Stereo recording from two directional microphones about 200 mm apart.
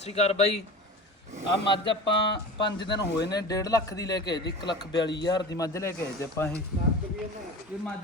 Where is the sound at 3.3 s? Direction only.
20° left (ahead or behind).